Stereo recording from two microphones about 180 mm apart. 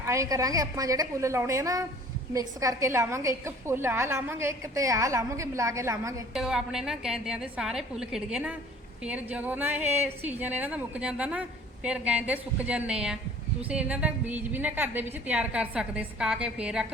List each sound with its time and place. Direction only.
0.0 s a woman's voice: 15° right (ahead or behind)
6.3 s a woman's voice: 5° right (ahead or behind)